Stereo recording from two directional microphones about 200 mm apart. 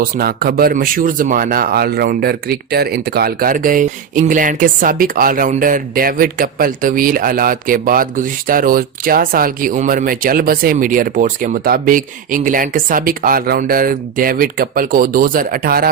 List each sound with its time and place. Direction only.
0.0 s speech: 50° right (ahead or behind)